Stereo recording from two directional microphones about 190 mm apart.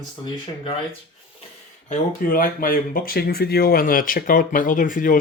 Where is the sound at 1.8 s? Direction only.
50° left (ahead or behind).